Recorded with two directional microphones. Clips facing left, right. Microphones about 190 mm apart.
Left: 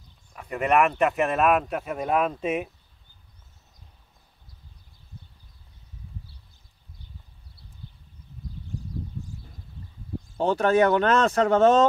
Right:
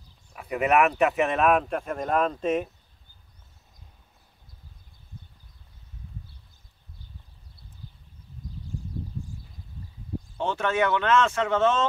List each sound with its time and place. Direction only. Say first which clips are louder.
0.3 s speech: even; 5° right (ahead or behind)
10.3 s speech: left 6 dB; 40° left (ahead or behind)